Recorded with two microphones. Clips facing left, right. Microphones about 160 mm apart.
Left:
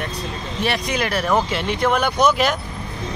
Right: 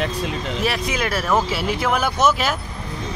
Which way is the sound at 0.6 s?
Centre (ahead or behind).